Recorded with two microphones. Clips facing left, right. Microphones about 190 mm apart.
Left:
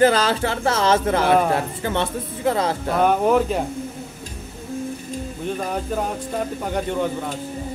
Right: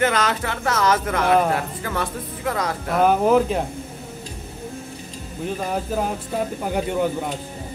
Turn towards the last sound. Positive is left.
turn(degrees=-10)  # may be behind; listen again after turning